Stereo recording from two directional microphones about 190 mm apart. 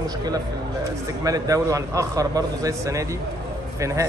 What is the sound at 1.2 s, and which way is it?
Speech, 20° right (ahead or behind).